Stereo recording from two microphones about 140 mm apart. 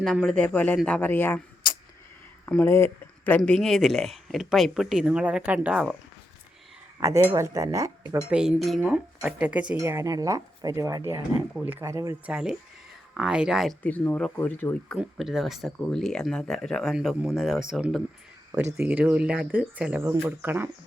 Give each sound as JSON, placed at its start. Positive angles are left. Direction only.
{"t": 0.0, "sound": "speech", "side_deg": 5}
{"t": 2.5, "sound": "speech", "side_deg": 15}
{"t": 7.0, "sound": "speech", "side_deg": -20}
{"t": 8.3, "sound": "speech", "side_deg": -5}
{"t": 9.7, "sound": "speech", "side_deg": -20}
{"t": 12.2, "sound": "speech", "side_deg": -5}
{"t": 13.8, "sound": "speech", "side_deg": 10}
{"t": 14.9, "sound": "speech", "side_deg": -5}